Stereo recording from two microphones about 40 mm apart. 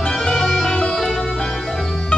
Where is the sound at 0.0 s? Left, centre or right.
Centre.